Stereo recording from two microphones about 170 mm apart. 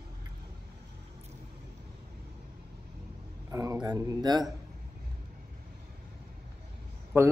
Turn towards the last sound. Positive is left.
turn(degrees=-15)  # may be behind; listen again after turning